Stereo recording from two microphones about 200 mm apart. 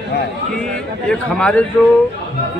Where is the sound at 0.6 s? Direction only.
5° left (ahead or behind).